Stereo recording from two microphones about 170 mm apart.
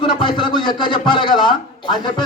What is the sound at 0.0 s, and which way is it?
Speech, 30° left (ahead or behind).